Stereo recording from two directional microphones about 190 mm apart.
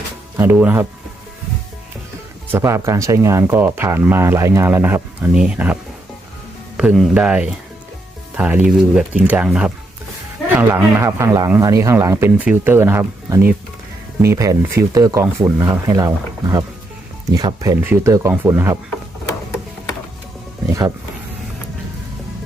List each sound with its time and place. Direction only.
0.3 s speech: 10° right (ahead or behind)
2.5 s speech: 15° right (ahead or behind)
6.7 s speech: centre (ahead or behind)